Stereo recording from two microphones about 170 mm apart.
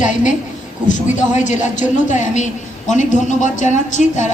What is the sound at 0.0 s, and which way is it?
A woman's voice, 45° left (ahead or behind).